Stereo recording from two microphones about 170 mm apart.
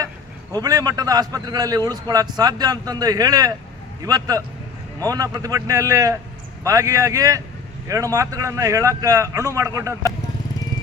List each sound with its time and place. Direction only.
0.5 s a man's voice: 20° right (ahead or behind)